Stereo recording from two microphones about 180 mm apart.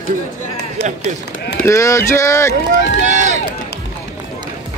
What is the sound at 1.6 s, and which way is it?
Speech, 15° left (ahead or behind).